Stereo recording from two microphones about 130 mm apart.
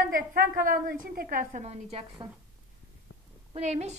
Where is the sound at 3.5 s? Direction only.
60° right (ahead or behind).